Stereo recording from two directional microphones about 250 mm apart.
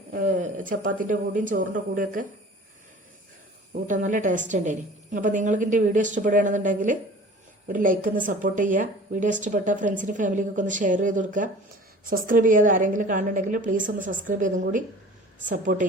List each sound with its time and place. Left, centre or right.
0.1 s speech: right
3.8 s speech: right